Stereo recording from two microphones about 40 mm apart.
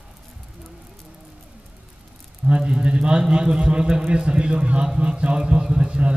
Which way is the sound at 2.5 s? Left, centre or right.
Right.